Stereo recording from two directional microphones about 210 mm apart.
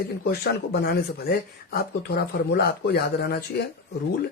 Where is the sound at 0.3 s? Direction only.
50° left (ahead or behind).